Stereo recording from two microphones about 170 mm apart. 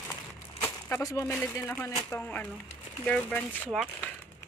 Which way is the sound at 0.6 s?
15° left (ahead or behind).